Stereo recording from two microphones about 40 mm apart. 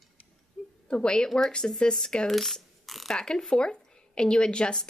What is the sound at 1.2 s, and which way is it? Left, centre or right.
Speech, centre.